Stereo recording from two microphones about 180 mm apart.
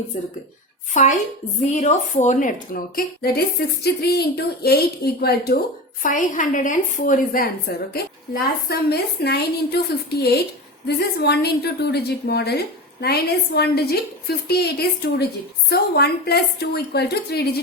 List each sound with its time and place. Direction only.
0.1 s a woman's voice: 45° left (ahead or behind); by 5.5 s 60° left (ahead or behind)
6.0 s a woman's voice: 45° left (ahead or behind)
7.9 s a woman's voice: 60° left (ahead or behind)